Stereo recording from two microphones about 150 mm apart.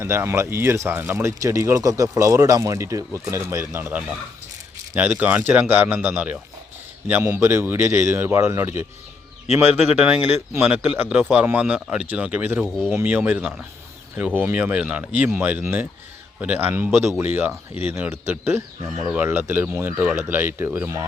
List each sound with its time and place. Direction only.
0.0 s speech: 15° right (ahead or behind)